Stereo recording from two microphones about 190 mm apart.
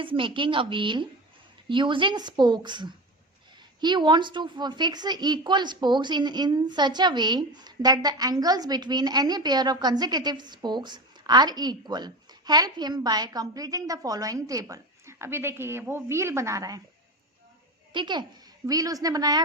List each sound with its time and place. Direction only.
0.0 s a woman's voice: 25° right (ahead or behind)
17.9 s a woman's voice: 25° right (ahead or behind)